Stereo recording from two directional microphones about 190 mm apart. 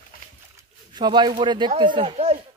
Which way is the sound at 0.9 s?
25° right (ahead or behind).